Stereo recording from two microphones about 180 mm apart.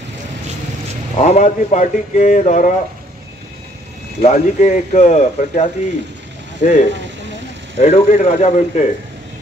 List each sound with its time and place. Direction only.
1.1 s speech: 40° left (ahead or behind)
4.2 s speech: 40° left (ahead or behind)